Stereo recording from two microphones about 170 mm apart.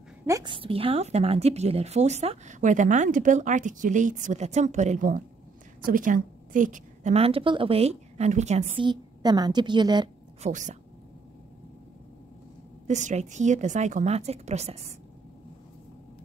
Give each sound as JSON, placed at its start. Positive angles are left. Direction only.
{"t": 0.3, "sound": "a woman's voice", "side_deg": -25}
{"t": 8.8, "sound": "a woman's voice", "side_deg": -25}
{"t": 10.4, "sound": "a woman's voice", "side_deg": -45}
{"t": 12.8, "sound": "a woman's voice", "side_deg": -45}